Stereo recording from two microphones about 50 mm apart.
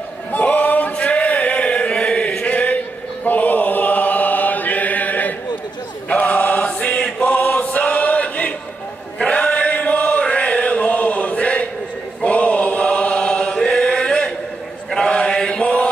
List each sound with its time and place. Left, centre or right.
0.3 s chant: left
7.6 s choir: left
9.2 s chant: left
12.2 s choir: left
14.9 s chant: centre